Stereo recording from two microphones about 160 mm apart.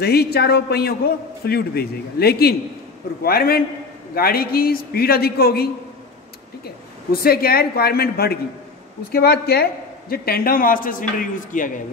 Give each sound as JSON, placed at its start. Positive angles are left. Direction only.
{"t": 0.0, "sound": "a man's voice", "side_deg": 80}
{"t": 7.1, "sound": "a man's voice", "side_deg": 70}